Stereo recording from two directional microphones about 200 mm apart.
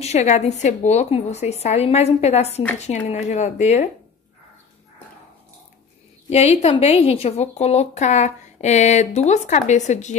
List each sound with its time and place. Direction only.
0.0 s a woman's voice: 35° left (ahead or behind)
6.3 s a woman's voice: 30° left (ahead or behind)